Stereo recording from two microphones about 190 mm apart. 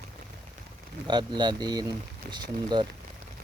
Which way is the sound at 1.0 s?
25° right (ahead or behind).